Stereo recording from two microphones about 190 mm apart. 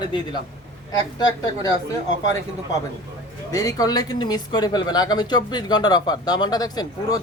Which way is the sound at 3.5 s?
20° left (ahead or behind).